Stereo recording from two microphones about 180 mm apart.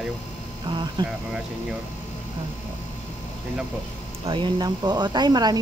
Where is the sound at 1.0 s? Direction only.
25° right (ahead or behind).